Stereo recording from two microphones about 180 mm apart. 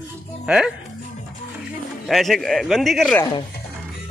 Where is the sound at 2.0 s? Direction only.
Centre (ahead or behind).